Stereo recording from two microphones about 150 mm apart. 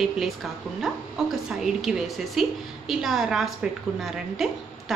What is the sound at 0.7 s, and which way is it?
A woman's voice, centre (ahead or behind).